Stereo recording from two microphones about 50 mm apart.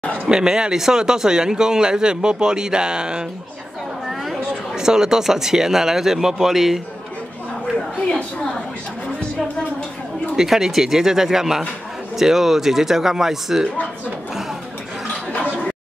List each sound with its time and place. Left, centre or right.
0.0 s a sound: left
0.3 s speech: centre
4.3 s speech: centre
10.3 s speech: centre